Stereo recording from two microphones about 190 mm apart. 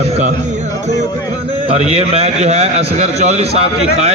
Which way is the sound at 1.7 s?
30° right (ahead or behind).